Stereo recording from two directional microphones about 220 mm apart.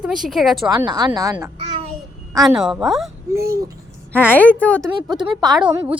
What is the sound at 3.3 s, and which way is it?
Speech, 15° right (ahead or behind).